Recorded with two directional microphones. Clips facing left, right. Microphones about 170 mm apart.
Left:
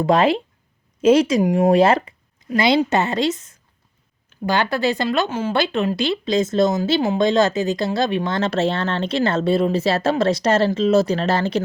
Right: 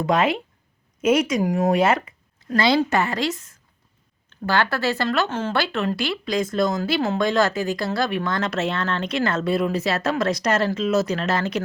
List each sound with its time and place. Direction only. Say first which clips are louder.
0.0 s speech: left 4 dB; 35° left (ahead or behind)
2.6 s speech: left 2 dB; 20° left (ahead or behind)